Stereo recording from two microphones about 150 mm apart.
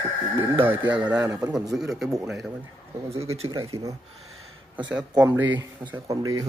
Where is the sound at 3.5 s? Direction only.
20° right (ahead or behind).